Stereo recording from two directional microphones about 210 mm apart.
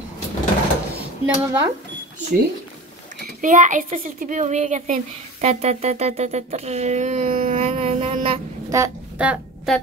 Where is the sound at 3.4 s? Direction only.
35° right (ahead or behind).